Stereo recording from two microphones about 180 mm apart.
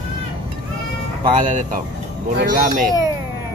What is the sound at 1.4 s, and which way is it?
A child's voice, 45° right (ahead or behind).